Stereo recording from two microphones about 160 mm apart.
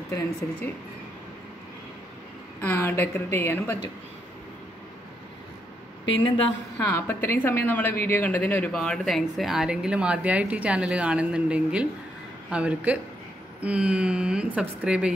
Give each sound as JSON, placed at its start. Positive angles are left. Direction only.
{"t": 2.6, "sound": "a woman's voice", "side_deg": 15}
{"t": 6.1, "sound": "a woman's voice", "side_deg": 30}
{"t": 6.8, "sound": "a woman's voice", "side_deg": 15}